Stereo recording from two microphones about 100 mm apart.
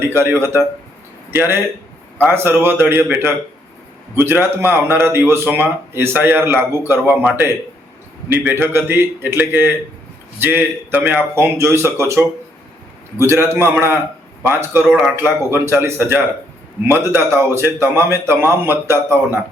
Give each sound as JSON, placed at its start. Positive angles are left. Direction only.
{"t": 0.0, "sound": "a man's voice", "side_deg": -25}